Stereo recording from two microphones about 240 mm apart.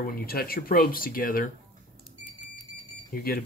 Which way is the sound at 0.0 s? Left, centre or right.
Left.